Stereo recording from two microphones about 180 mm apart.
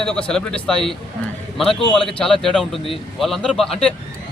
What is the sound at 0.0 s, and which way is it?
A man's voice, 5° left (ahead or behind).